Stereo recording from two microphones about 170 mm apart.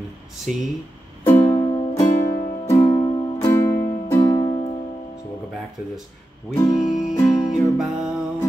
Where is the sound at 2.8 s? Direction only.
30° left (ahead or behind).